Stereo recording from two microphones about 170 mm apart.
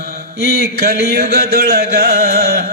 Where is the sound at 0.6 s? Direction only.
65° right (ahead or behind).